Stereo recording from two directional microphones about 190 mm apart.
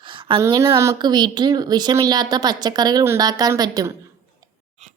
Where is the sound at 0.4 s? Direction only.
15° right (ahead or behind).